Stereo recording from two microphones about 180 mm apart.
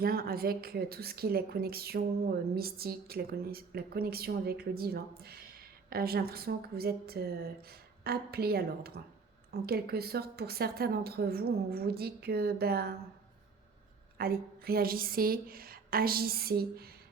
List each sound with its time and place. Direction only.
0.0 s a woman's voice: 55° right (ahead or behind)
14.2 s a woman's voice: 55° right (ahead or behind)